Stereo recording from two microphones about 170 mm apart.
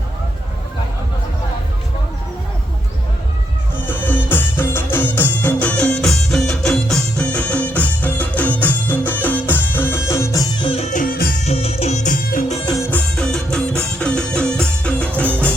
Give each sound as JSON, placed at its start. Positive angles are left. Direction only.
{"t": 3.8, "sound": "music", "side_deg": 10}
{"t": 10.6, "sound": "music", "side_deg": 35}
{"t": 11.4, "sound": "music", "side_deg": 35}
{"t": 12.9, "sound": "music", "side_deg": 5}